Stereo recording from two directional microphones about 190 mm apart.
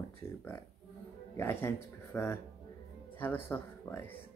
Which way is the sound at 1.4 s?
10° left (ahead or behind).